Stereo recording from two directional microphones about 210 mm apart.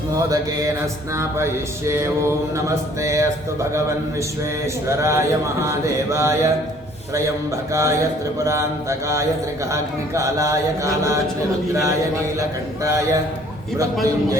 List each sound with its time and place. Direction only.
1.1 s mantra: 15° right (ahead or behind)
2.6 s mantra: 15° right (ahead or behind)
7.7 s mantra: 15° right (ahead or behind)
12.4 s mantra: 15° right (ahead or behind)